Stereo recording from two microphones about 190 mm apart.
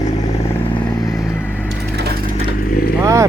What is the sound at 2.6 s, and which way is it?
Vehicle, 55° left (ahead or behind).